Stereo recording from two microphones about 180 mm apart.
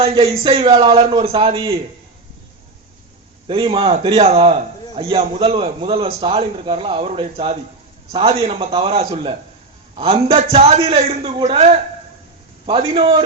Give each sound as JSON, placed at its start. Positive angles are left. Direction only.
{"t": 0.0, "sound": "a man's voice", "side_deg": -30}
{"t": 3.4, "sound": "a man's voice", "side_deg": -30}